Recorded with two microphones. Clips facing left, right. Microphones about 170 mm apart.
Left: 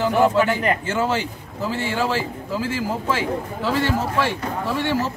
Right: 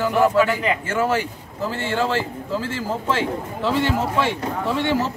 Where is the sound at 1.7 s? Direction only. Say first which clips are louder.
Even; 10° left (ahead or behind).